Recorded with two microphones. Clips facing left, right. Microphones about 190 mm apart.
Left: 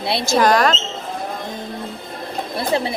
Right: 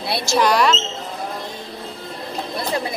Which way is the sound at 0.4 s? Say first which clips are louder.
Left 1 dB; 45° left (ahead or behind).